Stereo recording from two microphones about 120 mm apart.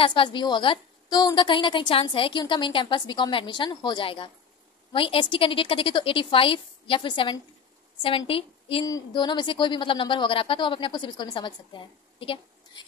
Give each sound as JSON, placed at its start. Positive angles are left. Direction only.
{"t": 0.0, "sound": "a woman's voice", "side_deg": 40}
{"t": 8.8, "sound": "a woman's voice", "side_deg": 35}